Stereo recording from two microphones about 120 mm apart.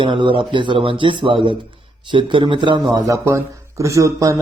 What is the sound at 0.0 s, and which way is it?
Speech, 45° right (ahead or behind).